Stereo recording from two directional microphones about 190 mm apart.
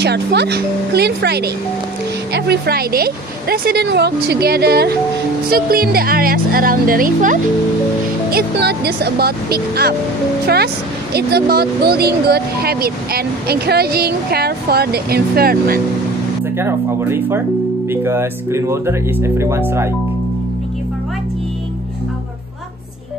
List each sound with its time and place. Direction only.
0.0 s speech: 60° right (ahead or behind)
16.5 s speech: 10° right (ahead or behind)